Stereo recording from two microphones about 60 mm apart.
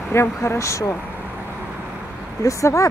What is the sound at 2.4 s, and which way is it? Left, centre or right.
Speech, left.